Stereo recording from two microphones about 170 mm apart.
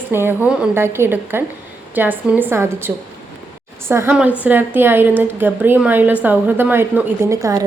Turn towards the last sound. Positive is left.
turn(degrees=-20)  # may be behind; listen again after turning